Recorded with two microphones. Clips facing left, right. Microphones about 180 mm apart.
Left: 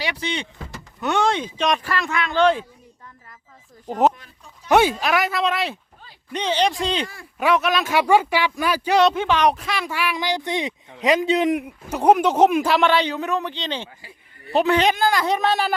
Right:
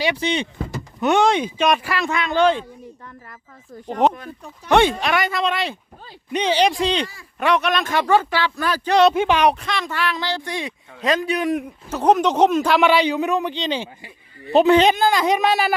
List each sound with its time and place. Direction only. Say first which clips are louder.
0.0 s a man's voice: right 6 dB; 20° right (ahead or behind)
3.8 s speech: even; 5° left (ahead or behind)
4.1 s speech: right 12 dB; 55° right (ahead or behind)
4.7 s speech: right 1 dB; 5° left (ahead or behind)
6.3 s speech: right 3 dB; 10° right (ahead or behind)
7.3 s speech: even; 5° left (ahead or behind)
9.0 s speech: right 2 dB; 10° right (ahead or behind)
9.5 s speech: right 1 dB; 5° left (ahead or behind); by 11.5 s 20° left (ahead or behind)
11.5 s speech: even; 10° left (ahead or behind)
12.8 s speech: right 3 dB; 10° right (ahead or behind)
14.0 s a man's voice: right 5 dB; 20° right (ahead or behind)